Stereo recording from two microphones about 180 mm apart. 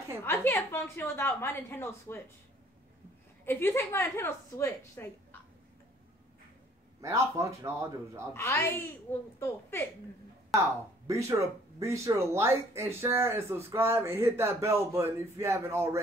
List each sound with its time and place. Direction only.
0.2 s a woman's voice: 10° left (ahead or behind)
3.4 s a woman's voice: 10° left (ahead or behind)
7.0 s speech: 15° right (ahead or behind)
8.3 s a woman's voice: 15° left (ahead or behind)
11.1 s speech: 15° right (ahead or behind)